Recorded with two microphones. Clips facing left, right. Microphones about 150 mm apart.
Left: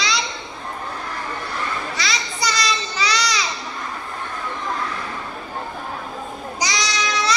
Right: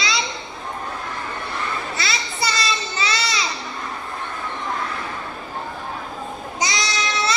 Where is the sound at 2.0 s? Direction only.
30° right (ahead or behind).